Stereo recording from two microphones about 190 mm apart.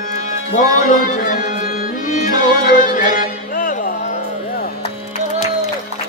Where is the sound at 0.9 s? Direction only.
45° left (ahead or behind).